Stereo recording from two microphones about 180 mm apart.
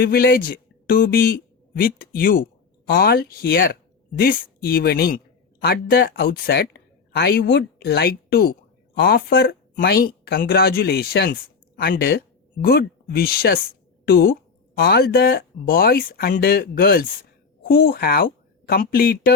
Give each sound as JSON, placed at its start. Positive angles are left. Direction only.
{"t": 0.0, "sound": "a woman's voice", "side_deg": 60}